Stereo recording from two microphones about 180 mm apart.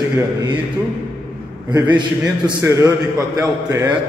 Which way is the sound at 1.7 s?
25° right (ahead or behind).